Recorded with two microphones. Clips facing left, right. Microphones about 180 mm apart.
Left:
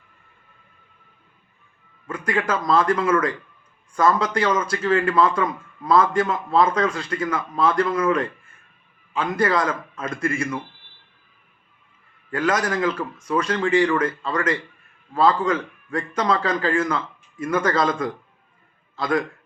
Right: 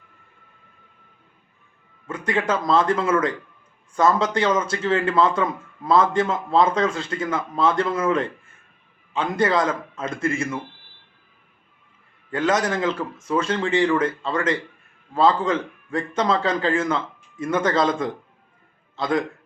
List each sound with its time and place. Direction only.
2.0 s a man's voice: 25° right (ahead or behind)
12.3 s a man's voice: 25° right (ahead or behind)